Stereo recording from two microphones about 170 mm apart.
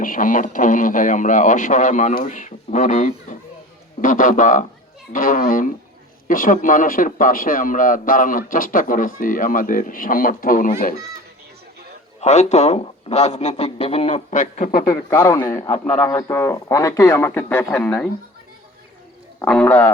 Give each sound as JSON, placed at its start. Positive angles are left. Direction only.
{"t": 0.0, "sound": "a man's voice", "side_deg": 50}
{"t": 12.2, "sound": "a man's voice", "side_deg": 40}
{"t": 15.1, "sound": "a man's voice", "side_deg": 15}
{"t": 19.5, "sound": "a man's voice", "side_deg": 5}